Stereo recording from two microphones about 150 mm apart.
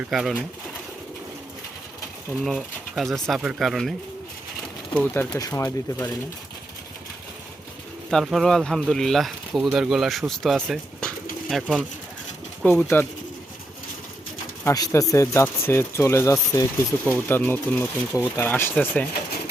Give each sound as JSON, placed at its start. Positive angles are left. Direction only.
{"t": 0.1, "sound": "speech", "side_deg": 0}
{"t": 2.4, "sound": "speech", "side_deg": 0}
{"t": 4.9, "sound": "speech", "side_deg": 10}
{"t": 5.4, "sound": "speech", "side_deg": 20}
{"t": 8.1, "sound": "speech", "side_deg": 0}
{"t": 12.6, "sound": "speech", "side_deg": 15}
{"t": 14.6, "sound": "speech", "side_deg": 20}